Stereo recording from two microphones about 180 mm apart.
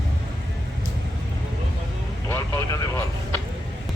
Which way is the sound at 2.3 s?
15° left (ahead or behind).